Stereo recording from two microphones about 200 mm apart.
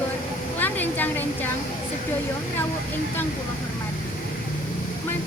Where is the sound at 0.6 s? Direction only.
10° left (ahead or behind).